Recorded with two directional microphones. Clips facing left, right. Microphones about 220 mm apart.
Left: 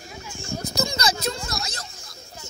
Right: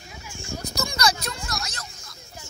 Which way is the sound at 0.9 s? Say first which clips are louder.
Left 1 dB; 25° left (ahead or behind).